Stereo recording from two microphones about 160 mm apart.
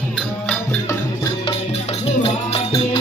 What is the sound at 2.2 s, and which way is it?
Music, 35° left (ahead or behind).